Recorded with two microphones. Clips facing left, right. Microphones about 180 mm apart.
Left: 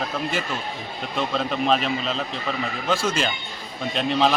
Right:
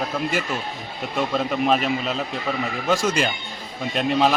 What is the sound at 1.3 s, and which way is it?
A man's voice, 10° right (ahead or behind).